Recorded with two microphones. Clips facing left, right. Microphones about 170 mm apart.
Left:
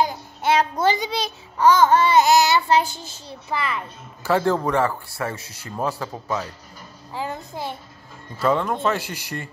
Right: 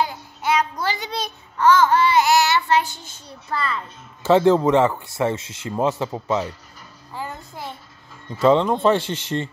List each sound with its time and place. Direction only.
0.0 s child singing: 35° left (ahead or behind)
1.6 s babbling: 15° left (ahead or behind)
3.4 s a child's voice: 15° left (ahead or behind)
4.2 s speech: 20° right (ahead or behind)
7.1 s a child's voice: 15° left (ahead or behind)
8.4 s speech: 20° right (ahead or behind)